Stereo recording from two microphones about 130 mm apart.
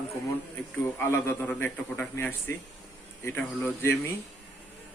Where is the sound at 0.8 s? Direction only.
15° left (ahead or behind).